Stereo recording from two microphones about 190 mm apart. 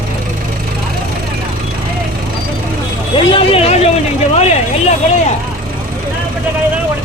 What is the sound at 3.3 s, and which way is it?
Vehicle, 30° left (ahead or behind).